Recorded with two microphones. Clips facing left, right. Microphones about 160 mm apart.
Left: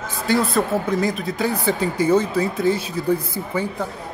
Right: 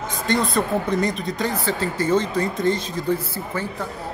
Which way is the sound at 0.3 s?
5° left (ahead or behind).